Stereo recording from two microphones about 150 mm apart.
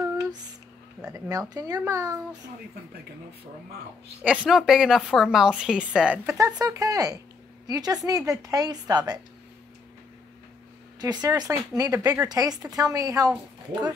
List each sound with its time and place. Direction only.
1.3 s speech: 25° right (ahead or behind)
4.2 s a woman's voice: 10° right (ahead or behind)
6.3 s speech: 20° right (ahead or behind)
11.0 s speech: 25° right (ahead or behind)